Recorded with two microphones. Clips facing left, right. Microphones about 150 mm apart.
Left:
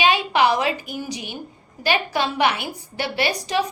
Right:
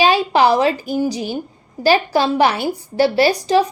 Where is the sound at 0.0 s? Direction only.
35° right (ahead or behind).